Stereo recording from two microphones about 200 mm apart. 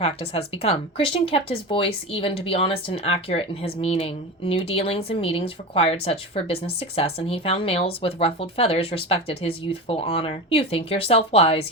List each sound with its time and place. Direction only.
0.0 s speech: 30° left (ahead or behind)